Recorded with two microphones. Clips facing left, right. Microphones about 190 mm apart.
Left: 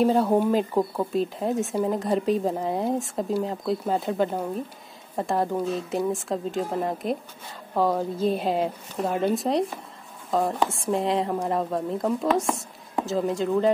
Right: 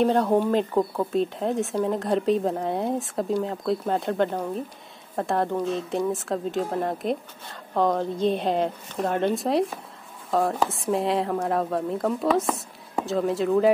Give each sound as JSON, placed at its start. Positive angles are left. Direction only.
{"t": 0.0, "sound": "speech", "side_deg": 5}